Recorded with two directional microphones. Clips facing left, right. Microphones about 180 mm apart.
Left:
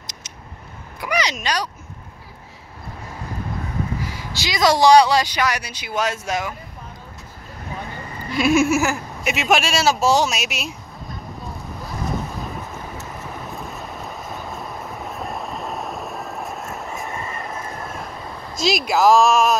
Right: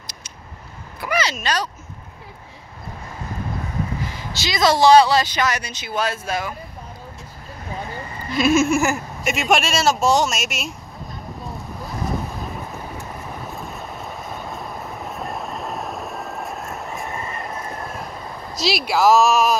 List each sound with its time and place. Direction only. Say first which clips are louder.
0.0 s a sound: even; 20° left (ahead or behind)
1.0 s speech: even; 15° left (ahead or behind)
4.0 s speech: even; 10° left (ahead or behind)
8.3 s speech: even; 15° left (ahead or behind)
11.8 s vehicle: right 1 dB; centre (ahead or behind)
13.5 s train: even; centre (ahead or behind)
18.6 s speech: left 2 dB; 45° left (ahead or behind)
18.9 s speech: even; 5° right (ahead or behind)